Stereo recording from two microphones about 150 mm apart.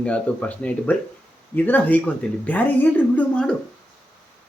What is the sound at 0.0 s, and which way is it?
Speech, 10° left (ahead or behind).